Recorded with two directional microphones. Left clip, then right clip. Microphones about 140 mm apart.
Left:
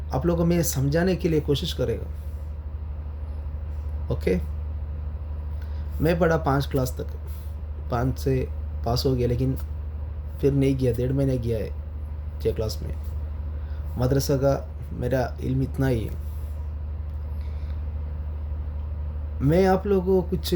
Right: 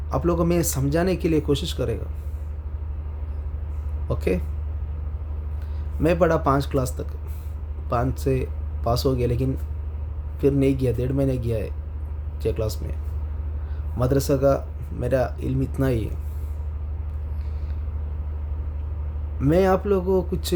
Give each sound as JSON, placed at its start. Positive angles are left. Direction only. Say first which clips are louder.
{"t": 0.1, "sound": "speech", "louder": "right 2 dB", "side_deg": -20}
{"t": 4.1, "sound": "speech", "louder": "right 1 dB", "side_deg": -20}
{"t": 6.0, "sound": "speech", "louder": "right 2 dB", "side_deg": -20}
{"t": 14.0, "sound": "speech", "louder": "right 3 dB", "side_deg": -20}
{"t": 19.4, "sound": "speech", "louder": "right 1 dB", "side_deg": -20}